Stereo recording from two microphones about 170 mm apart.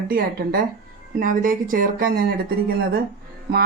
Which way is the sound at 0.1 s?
60° right (ahead or behind).